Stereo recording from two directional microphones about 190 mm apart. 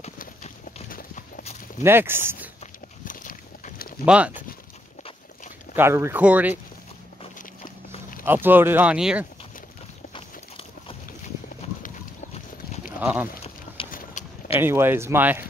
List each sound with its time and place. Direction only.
0.2 s clip-clop: 40° left (ahead or behind)
1.8 s speech: 10° right (ahead or behind)
3.1 s a sound: 45° left (ahead or behind)
4.0 s speech: 5° right (ahead or behind)
5.8 s speech: 15° right (ahead or behind)
8.3 s speech: 10° right (ahead or behind)
11.6 s a sound: 35° left (ahead or behind)
13.0 s speech: 5° right (ahead or behind)
13.8 s clip-clop: 25° left (ahead or behind)
14.2 s a sound: 40° left (ahead or behind)
14.6 s speech: 10° right (ahead or behind)